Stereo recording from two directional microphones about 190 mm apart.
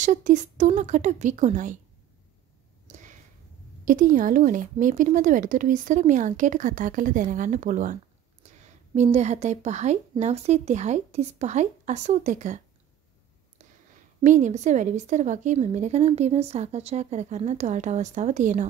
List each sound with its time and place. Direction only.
0.0 s speech: 40° right (ahead or behind)
2.9 s a sound: 40° right (ahead or behind)
3.8 s speech: 45° right (ahead or behind)
14.2 s speech: 40° right (ahead or behind)